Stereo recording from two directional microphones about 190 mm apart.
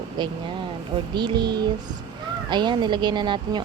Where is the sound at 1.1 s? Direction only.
25° right (ahead or behind).